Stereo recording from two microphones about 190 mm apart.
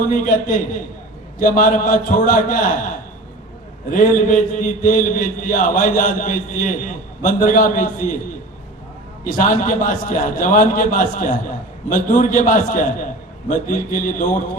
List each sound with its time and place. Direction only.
0.1 s a man's voice: 45° left (ahead or behind)
9.2 s a man's voice: 45° left (ahead or behind)